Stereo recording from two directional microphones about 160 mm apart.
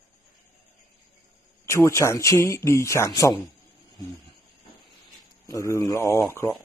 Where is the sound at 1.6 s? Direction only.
20° left (ahead or behind).